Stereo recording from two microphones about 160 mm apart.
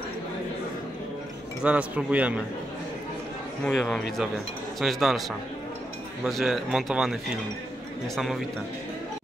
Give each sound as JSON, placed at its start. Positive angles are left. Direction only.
{"t": 1.6, "sound": "speech", "side_deg": -10}
{"t": 3.6, "sound": "speech", "side_deg": 5}
{"t": 6.2, "sound": "speech", "side_deg": 0}